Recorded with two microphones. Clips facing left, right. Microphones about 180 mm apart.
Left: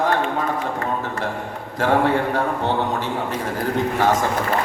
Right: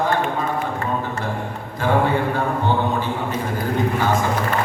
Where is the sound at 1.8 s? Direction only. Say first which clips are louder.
Left 1 dB; 85° left.